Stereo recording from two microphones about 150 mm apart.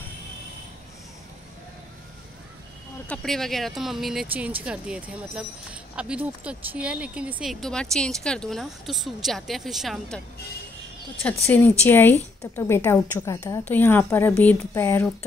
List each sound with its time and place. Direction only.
3.1 s a woman's voice: centre (ahead or behind)
7.6 s a woman's voice: 5° left (ahead or behind)
11.4 s a woman's voice: 15° left (ahead or behind)